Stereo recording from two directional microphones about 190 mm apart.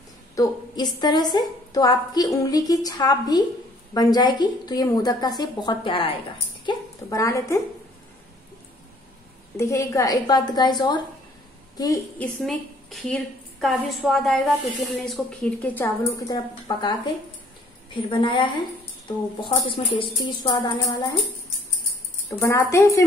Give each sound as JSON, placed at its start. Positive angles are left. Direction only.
{"t": 0.4, "sound": "a woman's voice", "side_deg": 20}
{"t": 9.6, "sound": "a woman's voice", "side_deg": 15}
{"t": 12.2, "sound": "a woman's voice", "side_deg": 0}
{"t": 18.2, "sound": "a woman's voice", "side_deg": 25}
{"t": 22.4, "sound": "speech", "side_deg": 15}